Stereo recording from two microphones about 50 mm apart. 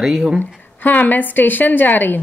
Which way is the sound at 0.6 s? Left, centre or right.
Left.